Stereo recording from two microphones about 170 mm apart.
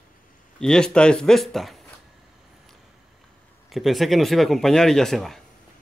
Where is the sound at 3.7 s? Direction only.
Centre (ahead or behind).